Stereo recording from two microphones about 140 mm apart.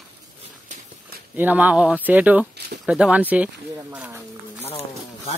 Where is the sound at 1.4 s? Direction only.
10° right (ahead or behind).